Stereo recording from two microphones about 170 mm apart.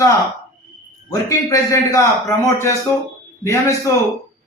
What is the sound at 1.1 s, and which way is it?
Speech, 20° left (ahead or behind).